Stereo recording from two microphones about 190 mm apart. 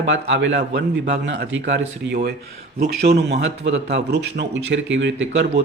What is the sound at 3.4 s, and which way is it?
Speech, 70° right (ahead or behind).